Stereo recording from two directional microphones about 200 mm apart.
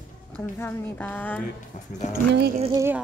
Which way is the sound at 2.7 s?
10° right (ahead or behind).